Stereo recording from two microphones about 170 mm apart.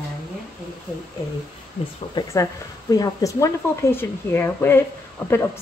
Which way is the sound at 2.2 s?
25° left (ahead or behind).